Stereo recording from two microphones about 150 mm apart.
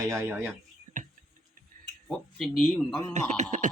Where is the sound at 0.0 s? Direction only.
20° right (ahead or behind).